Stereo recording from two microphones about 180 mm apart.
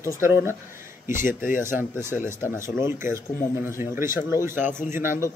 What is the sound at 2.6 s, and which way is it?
A man's voice, 15° right (ahead or behind).